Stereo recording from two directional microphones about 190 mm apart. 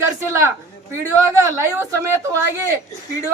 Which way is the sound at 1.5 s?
15° right (ahead or behind).